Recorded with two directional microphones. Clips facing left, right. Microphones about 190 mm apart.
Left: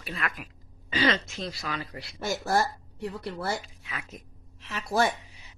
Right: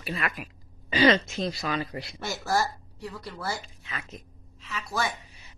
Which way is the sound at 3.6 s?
5° left (ahead or behind).